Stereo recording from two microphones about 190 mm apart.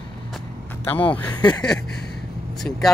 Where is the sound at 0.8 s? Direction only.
10° left (ahead or behind).